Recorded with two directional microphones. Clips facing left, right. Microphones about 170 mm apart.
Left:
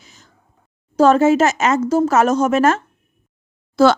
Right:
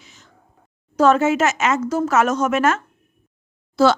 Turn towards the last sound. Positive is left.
turn(degrees=50)  # may be behind; listen again after turning